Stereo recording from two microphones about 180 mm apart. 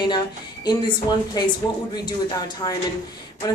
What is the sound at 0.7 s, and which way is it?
Speech, 25° left (ahead or behind).